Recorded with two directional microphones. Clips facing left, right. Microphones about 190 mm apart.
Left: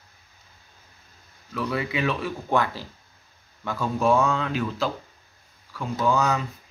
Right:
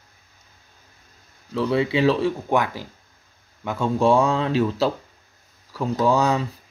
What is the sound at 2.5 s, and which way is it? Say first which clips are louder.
Speech: right 2 dB; 15° right (ahead or behind).